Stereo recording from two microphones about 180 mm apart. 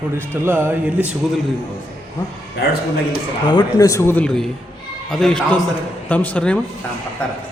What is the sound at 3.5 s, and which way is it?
A man's voice, 20° left (ahead or behind).